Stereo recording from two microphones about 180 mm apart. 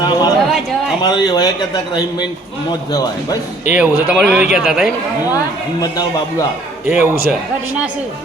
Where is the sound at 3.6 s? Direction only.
5° right (ahead or behind).